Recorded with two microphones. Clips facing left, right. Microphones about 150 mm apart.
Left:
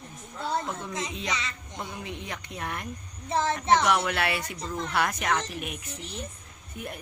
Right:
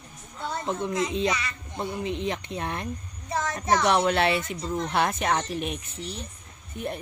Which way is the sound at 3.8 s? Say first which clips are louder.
Right 4 dB; 30° right (ahead or behind).